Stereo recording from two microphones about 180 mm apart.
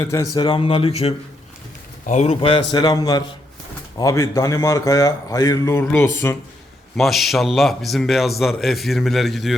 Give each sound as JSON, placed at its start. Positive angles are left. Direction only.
{"t": 0.0, "sound": "speech", "side_deg": 20}
{"t": 6.9, "sound": "a man's voice", "side_deg": 0}